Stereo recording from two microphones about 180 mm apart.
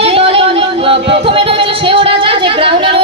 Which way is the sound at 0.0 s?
30° right (ahead or behind).